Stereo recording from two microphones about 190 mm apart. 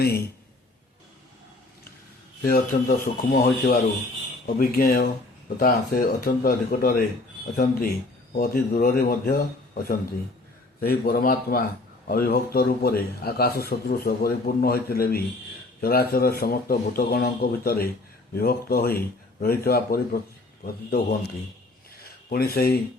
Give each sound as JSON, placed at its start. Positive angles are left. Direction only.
{"t": 2.4, "sound": "a man's voice", "side_deg": 50}